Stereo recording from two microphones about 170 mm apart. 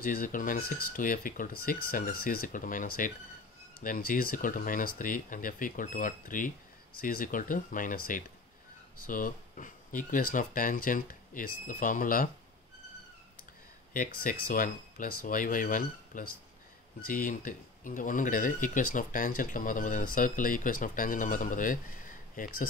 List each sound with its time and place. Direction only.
0.0 s speech: 55° left (ahead or behind)
13.9 s speech: 55° left (ahead or behind)